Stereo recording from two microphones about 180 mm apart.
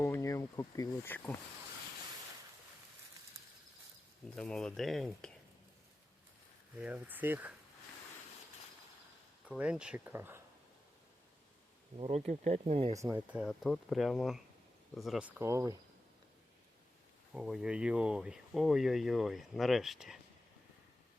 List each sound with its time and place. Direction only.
0.0 s speech: 15° left (ahead or behind)
4.4 s speech: 5° left (ahead or behind)
6.7 s speech: 10° right (ahead or behind)
9.5 s speech: 5° right (ahead or behind)
11.9 s speech: 35° right (ahead or behind)
12.9 s speech: 20° right (ahead or behind)
13.3 s speech: centre (ahead or behind)
15.4 s speech: 15° right (ahead or behind)
17.3 s speech: 5° right (ahead or behind)